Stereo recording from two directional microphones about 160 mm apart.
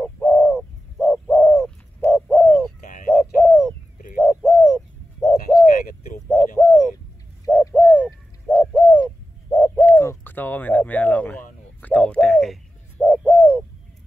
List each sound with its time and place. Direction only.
0.0 s bird: 5° left (ahead or behind)
5.7 s a sound: 55° left (ahead or behind)
6.3 s bird: 5° left (ahead or behind)